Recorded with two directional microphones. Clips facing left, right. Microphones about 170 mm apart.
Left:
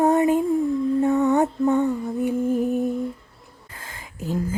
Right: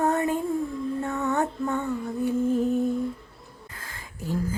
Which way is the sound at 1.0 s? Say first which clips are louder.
Left 7 dB; 15° left (ahead or behind).